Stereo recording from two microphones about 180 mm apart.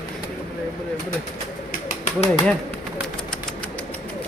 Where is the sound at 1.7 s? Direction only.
45° left (ahead or behind).